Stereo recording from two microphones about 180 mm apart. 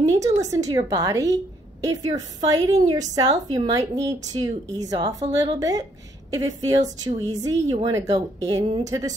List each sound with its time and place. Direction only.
0.0 s a woman's voice: 20° right (ahead or behind)